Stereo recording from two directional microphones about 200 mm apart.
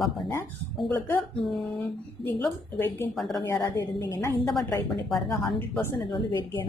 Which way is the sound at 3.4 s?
10° left (ahead or behind).